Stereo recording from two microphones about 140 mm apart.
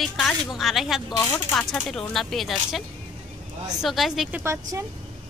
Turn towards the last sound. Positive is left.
turn(degrees=-20)  # may be behind; listen again after turning